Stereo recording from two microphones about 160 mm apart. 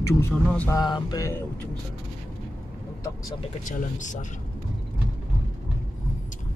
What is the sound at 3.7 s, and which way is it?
Speech, 50° left (ahead or behind).